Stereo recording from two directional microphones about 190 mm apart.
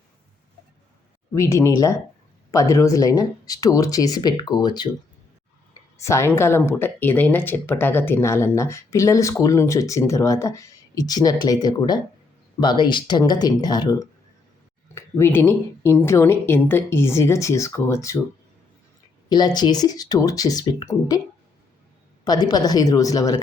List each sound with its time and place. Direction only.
1.3 s speech: 15° left (ahead or behind)
6.0 s speech: 15° left (ahead or behind)
19.3 s speech: 20° left (ahead or behind)
22.2 s speech: 20° left (ahead or behind)